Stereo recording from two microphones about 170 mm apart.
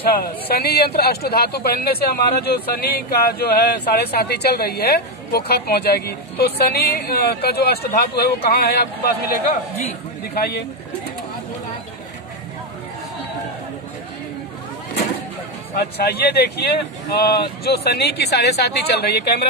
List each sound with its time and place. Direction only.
0.0 s speech: 65° left (ahead or behind)
9.5 s a man's voice: 40° left (ahead or behind)
10.2 s speech: 70° left (ahead or behind)
15.7 s speech: 70° left (ahead or behind)